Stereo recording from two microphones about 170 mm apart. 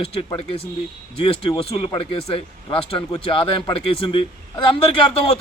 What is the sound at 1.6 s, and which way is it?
Speech, 35° left (ahead or behind).